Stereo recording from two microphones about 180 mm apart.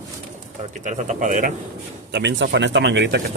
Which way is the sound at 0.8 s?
40° right (ahead or behind).